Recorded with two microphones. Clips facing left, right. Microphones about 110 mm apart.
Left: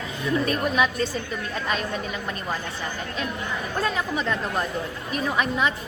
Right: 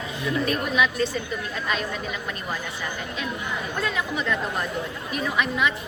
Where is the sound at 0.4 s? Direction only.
40° left (ahead or behind).